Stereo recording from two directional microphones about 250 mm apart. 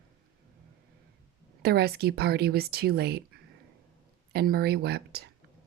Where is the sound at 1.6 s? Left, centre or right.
Right.